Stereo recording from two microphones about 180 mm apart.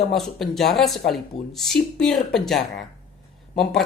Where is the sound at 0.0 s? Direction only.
Centre (ahead or behind).